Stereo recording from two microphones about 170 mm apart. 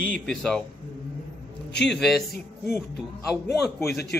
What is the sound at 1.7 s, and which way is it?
Speech, 85° left.